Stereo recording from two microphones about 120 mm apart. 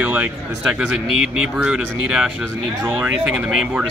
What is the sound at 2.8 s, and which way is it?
Speech, 15° right (ahead or behind).